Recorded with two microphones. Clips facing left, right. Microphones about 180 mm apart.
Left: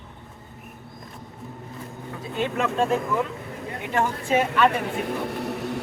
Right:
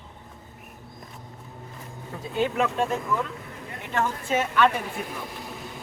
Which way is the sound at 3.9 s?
10° left (ahead or behind).